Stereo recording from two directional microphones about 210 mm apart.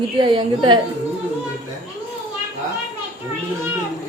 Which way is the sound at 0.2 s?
20° right (ahead or behind).